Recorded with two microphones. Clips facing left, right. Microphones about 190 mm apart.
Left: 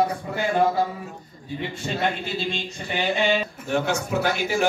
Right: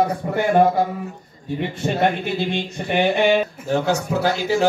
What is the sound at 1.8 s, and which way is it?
Speech, 60° right (ahead or behind).